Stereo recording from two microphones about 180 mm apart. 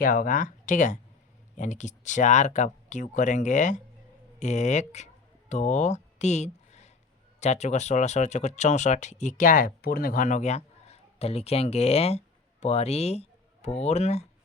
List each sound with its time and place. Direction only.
0.0 s speech: 50° left (ahead or behind)